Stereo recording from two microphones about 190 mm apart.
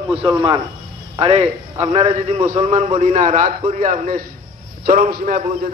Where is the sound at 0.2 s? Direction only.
25° right (ahead or behind).